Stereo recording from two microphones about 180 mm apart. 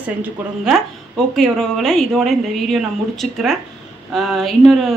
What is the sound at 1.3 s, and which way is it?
A woman's voice, centre (ahead or behind).